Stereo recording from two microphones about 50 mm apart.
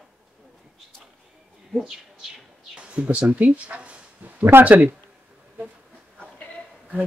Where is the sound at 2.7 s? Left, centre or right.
Right.